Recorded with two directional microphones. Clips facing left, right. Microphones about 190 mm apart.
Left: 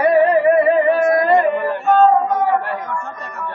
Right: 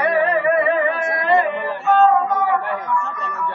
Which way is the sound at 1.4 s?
45° left (ahead or behind).